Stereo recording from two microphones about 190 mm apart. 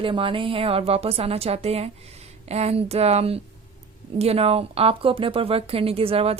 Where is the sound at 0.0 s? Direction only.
25° right (ahead or behind).